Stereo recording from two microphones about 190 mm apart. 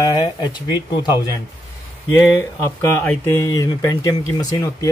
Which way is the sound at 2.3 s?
20° left (ahead or behind).